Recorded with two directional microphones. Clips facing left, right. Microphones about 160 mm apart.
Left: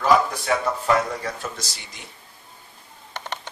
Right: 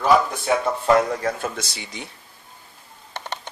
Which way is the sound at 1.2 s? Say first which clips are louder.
Right 5 dB; 60° right (ahead or behind).